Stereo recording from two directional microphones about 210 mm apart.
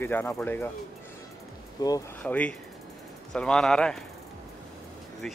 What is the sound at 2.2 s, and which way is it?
Speech, 5° left (ahead or behind).